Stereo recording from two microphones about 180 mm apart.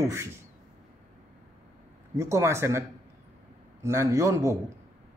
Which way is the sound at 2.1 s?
15° right (ahead or behind).